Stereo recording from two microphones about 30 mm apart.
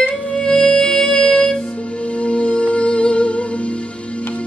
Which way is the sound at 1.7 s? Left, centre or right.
Left.